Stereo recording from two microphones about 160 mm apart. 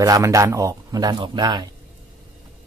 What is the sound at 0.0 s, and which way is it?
Speech, 20° right (ahead or behind).